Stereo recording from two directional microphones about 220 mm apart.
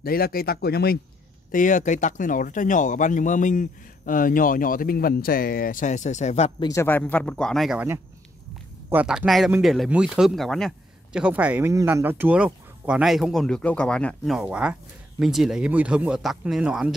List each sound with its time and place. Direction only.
0.0 s speech: 40° left (ahead or behind)
1.5 s speech: 35° left (ahead or behind)
6.7 s speech: 10° left (ahead or behind)